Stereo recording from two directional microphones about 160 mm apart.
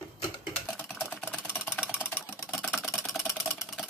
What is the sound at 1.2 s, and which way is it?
Engine, 10° left (ahead or behind).